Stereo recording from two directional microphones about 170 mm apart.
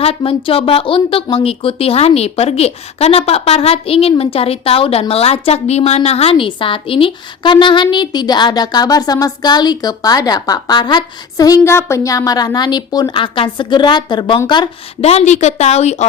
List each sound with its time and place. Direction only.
0.0 s speech: 35° left (ahead or behind)